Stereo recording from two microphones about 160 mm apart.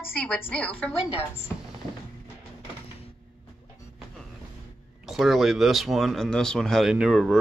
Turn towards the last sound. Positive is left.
turn(degrees=0)  # may be behind; listen again after turning